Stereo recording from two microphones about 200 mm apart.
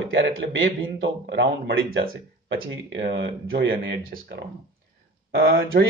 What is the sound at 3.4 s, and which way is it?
Speech, 75° right (ahead or behind).